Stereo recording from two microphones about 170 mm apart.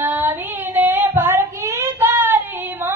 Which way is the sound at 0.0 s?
10° right (ahead or behind).